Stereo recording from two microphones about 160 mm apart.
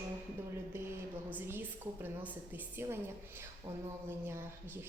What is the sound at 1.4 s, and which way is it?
A woman's voice, 10° right (ahead or behind).